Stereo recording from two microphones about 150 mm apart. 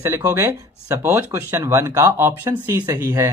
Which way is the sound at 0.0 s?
20° right (ahead or behind).